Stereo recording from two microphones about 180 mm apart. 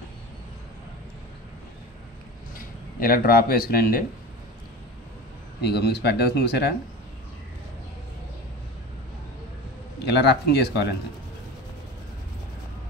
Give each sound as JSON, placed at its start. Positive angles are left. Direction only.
{"t": 2.5, "sound": "speech", "side_deg": 55}
{"t": 5.6, "sound": "speech", "side_deg": 65}
{"t": 9.9, "sound": "speech", "side_deg": 65}